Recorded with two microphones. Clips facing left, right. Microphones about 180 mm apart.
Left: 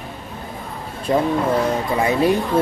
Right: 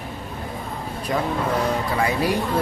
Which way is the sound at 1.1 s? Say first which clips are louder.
Left 5 dB; 30° left (ahead or behind).